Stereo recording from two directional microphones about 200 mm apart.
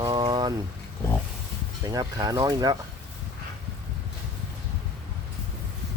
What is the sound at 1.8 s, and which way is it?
Speech, 20° right (ahead or behind).